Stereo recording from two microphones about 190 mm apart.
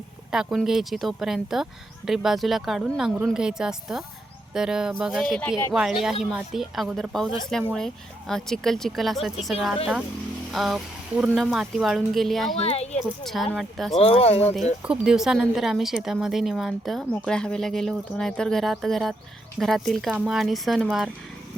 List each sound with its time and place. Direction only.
0.3 s a woman's voice: 5° right (ahead or behind)
5.5 s a woman's voice: 15° left (ahead or behind)
5.7 s a woman's voice: centre (ahead or behind)
12.5 s speech: 35° left (ahead or behind)
13.2 s a woman's voice: centre (ahead or behind)
14.0 s speech: 30° left (ahead or behind)
14.8 s a woman's voice: 5° right (ahead or behind)